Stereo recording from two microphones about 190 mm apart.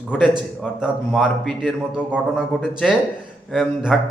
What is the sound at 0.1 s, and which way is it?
A man's voice, centre (ahead or behind).